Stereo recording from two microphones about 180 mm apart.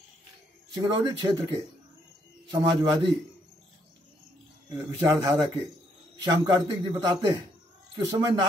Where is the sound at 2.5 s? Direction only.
25° right (ahead or behind).